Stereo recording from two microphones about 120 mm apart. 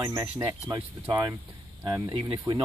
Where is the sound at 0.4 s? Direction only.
35° right (ahead or behind).